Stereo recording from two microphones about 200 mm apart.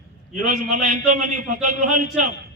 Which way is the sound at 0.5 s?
40° right (ahead or behind).